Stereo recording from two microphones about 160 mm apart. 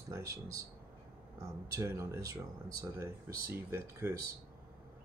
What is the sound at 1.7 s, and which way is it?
Speech, 20° right (ahead or behind).